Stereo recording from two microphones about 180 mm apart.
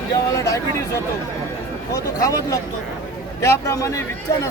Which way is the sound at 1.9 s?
20° left (ahead or behind).